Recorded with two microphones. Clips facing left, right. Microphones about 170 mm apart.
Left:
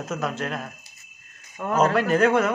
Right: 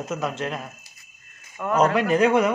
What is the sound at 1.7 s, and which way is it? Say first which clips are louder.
Speech: right 1 dB; centre (ahead or behind).